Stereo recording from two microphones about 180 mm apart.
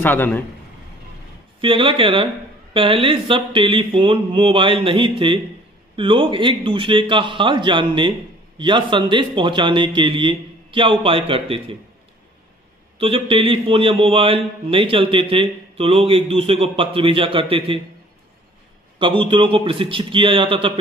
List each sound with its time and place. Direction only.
0.0 s a man's voice: 10° left (ahead or behind)
1.6 s a man's voice: 30° right (ahead or behind)
13.0 s a man's voice: 30° right (ahead or behind)
18.9 s a man's voice: 30° right (ahead or behind)